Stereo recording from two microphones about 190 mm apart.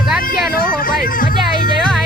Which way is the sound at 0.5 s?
50° left (ahead or behind).